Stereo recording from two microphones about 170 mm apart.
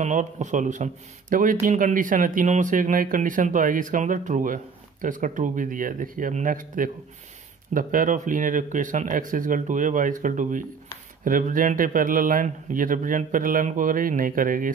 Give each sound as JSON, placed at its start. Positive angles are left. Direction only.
{"t": 0.0, "sound": "speech", "side_deg": -45}